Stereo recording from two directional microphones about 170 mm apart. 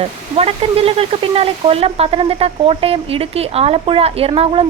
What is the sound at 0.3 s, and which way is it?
Speech, 35° right (ahead or behind).